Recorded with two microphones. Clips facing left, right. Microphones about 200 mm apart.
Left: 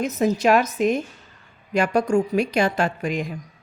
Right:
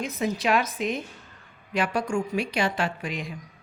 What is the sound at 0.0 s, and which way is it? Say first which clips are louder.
A woman's voice: left 7 dB; 45° left (ahead or behind).